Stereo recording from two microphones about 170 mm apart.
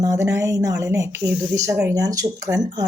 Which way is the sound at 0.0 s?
20° right (ahead or behind).